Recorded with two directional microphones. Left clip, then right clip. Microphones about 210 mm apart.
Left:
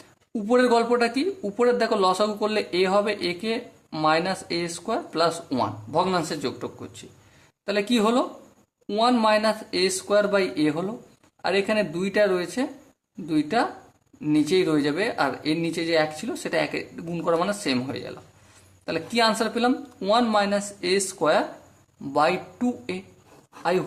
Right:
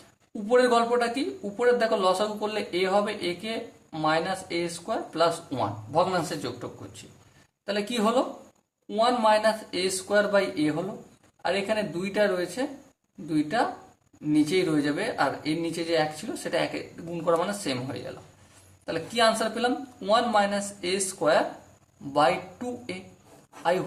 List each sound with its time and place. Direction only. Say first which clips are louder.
0.4 s speech: left 1 dB; 40° left (ahead or behind)
7.7 s speech: left 3 dB; 35° left (ahead or behind)